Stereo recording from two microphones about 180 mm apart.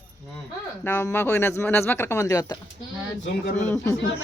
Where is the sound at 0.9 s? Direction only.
10° left (ahead or behind).